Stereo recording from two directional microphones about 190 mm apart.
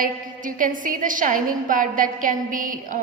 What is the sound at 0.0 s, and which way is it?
A woman's voice, 45° right (ahead or behind).